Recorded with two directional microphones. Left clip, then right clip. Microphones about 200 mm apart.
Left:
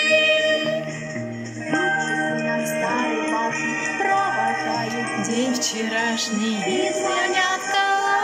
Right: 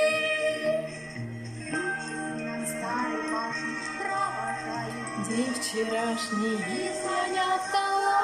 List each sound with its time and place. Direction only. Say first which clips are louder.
0.0 s music: left 7 dB; 5° right (ahead or behind)
2.9 s music: left 7 dB; 35° left (ahead or behind)
5.9 s music: left 6 dB; 5° right (ahead or behind)